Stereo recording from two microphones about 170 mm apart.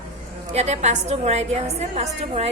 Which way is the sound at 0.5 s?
40° right (ahead or behind).